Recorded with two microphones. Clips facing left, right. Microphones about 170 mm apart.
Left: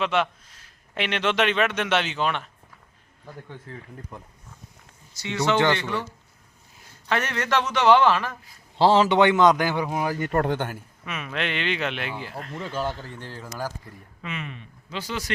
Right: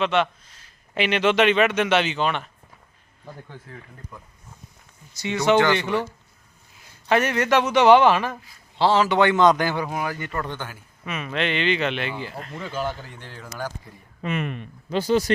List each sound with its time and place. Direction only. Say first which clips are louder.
0.0 s a man's voice: right 2 dB; 5° left (ahead or behind)
5.7 s speech: right 4 dB; 15° right (ahead or behind)
7.1 s speech: right 5 dB; 10° right (ahead or behind)
8.8 s a man's voice: left 1 dB; 30° left (ahead or behind)
9.3 s a man's voice: right 1 dB; 10° left (ahead or behind)
10.0 s speech: left 3 dB; 35° left (ahead or behind)
10.3 s a man's voice: left 6 dB; 65° left (ahead or behind)
11.0 s a man's voice: right 4 dB; centre (ahead or behind)
14.2 s speech: right 8 dB; 50° right (ahead or behind)
15.0 s speech: right 13 dB; 30° right (ahead or behind)